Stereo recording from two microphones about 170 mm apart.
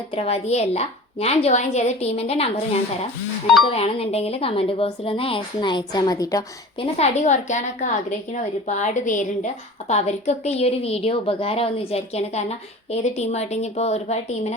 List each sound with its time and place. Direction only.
0.1 s a woman's voice: 40° left (ahead or behind); by 6.4 s 20° left (ahead or behind)
6.7 s a woman's voice: 40° left (ahead or behind)